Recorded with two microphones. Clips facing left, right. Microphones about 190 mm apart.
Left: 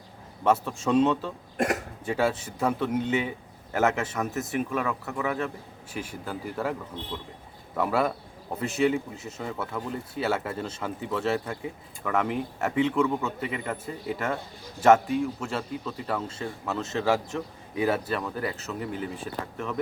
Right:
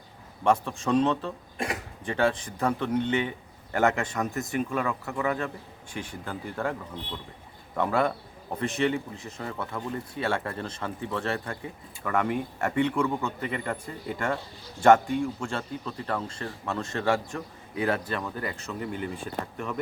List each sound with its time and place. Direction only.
0.4 s a man's voice: 5° left (ahead or behind)
1.5 s speech: 45° left (ahead or behind)
2.0 s speech: 5° left (ahead or behind)
7.8 s speech: 5° left (ahead or behind)